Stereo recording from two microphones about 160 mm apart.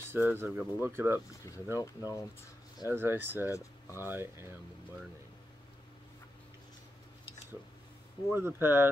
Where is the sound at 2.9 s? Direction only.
15° right (ahead or behind).